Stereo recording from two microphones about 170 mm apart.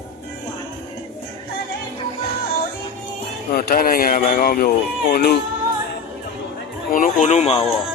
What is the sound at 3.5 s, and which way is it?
Speech, 55° left (ahead or behind).